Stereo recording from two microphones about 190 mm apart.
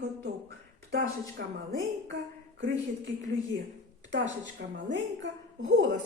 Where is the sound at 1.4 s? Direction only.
55° right (ahead or behind).